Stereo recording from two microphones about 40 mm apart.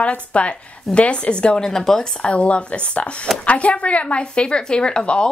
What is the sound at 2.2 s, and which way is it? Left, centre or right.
Speech, left.